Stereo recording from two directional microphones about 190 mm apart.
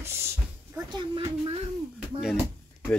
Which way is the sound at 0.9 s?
25° right (ahead or behind).